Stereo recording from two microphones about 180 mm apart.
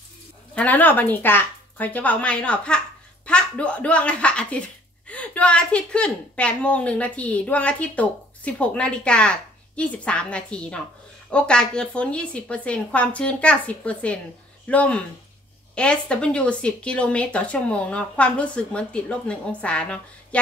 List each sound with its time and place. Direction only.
0.6 s a woman's voice: 10° left (ahead or behind)